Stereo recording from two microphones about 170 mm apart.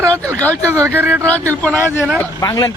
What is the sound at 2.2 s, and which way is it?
Speech, 20° left (ahead or behind).